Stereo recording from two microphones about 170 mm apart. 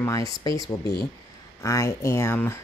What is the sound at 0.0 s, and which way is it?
Speech, 20° left (ahead or behind).